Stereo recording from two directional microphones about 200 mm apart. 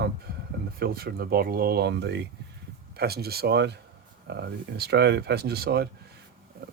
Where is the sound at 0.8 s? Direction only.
50° right (ahead or behind).